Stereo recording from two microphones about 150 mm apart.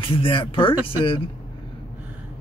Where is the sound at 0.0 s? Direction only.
35° left (ahead or behind).